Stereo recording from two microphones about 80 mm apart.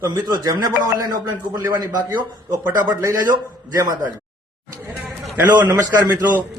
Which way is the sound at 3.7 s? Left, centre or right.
Right.